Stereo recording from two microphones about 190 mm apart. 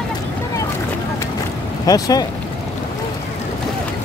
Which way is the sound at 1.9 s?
20° left (ahead or behind).